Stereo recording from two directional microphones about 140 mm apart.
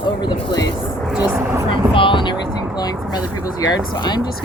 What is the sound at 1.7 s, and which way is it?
Speech, 35° left (ahead or behind).